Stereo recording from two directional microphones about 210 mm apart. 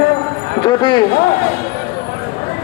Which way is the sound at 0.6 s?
20° left (ahead or behind).